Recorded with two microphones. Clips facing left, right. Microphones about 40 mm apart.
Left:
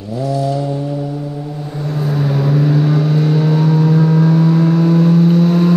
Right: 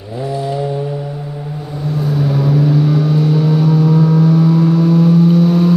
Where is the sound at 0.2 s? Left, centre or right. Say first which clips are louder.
Left 1 dB; right.